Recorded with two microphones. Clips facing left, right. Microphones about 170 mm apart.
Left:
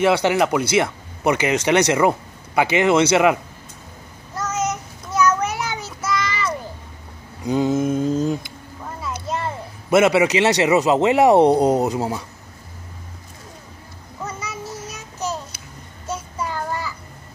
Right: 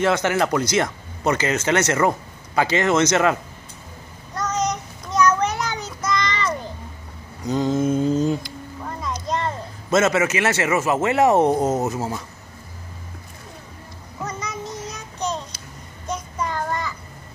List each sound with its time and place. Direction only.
0.0 s speech: 15° left (ahead or behind)
4.4 s child singing: 5° left (ahead or behind)
7.4 s a sound: 10° left (ahead or behind)
9.0 s speech: 5° left (ahead or behind)
14.2 s child singing: 5° left (ahead or behind)